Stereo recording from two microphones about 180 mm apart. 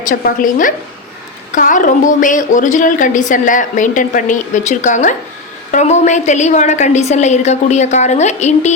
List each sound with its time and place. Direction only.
0.0 s a woman's voice: 45° left (ahead or behind)